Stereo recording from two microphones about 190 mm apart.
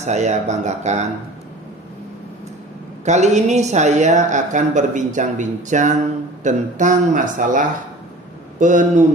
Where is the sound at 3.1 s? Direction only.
35° right (ahead or behind).